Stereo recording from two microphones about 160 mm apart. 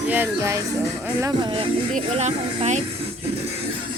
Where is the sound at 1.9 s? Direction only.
45° right (ahead or behind).